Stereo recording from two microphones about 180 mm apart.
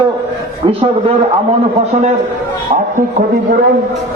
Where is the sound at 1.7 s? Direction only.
40° right (ahead or behind).